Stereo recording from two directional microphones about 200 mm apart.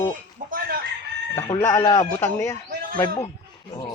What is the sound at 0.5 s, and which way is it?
Chicken, 45° right (ahead or behind).